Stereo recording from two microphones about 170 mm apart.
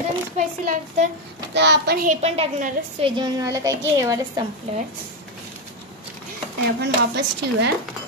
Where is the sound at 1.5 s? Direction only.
90° right.